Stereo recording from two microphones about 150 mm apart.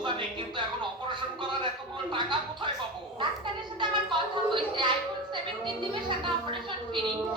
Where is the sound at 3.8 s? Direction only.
30° right (ahead or behind).